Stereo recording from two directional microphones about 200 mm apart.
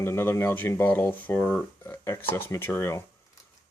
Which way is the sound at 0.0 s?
10° left (ahead or behind).